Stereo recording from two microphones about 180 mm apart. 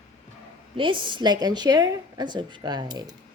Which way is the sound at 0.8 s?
25° right (ahead or behind).